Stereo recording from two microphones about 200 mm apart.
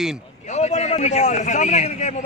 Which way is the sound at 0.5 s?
35° left (ahead or behind).